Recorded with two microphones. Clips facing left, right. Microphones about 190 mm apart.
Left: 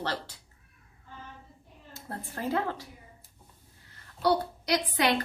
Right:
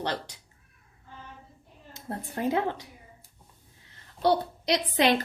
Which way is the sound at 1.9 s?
20° right (ahead or behind).